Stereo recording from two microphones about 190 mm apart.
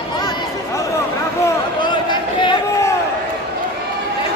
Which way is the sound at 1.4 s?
25° left (ahead or behind).